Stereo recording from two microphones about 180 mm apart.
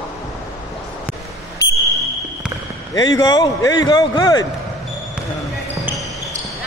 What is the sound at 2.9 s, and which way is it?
Speech, 20° left (ahead or behind).